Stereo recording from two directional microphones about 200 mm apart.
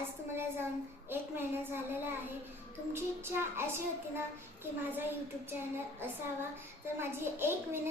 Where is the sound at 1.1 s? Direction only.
10° right (ahead or behind).